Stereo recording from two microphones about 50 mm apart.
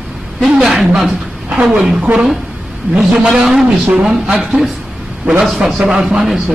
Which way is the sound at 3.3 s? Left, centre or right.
Centre.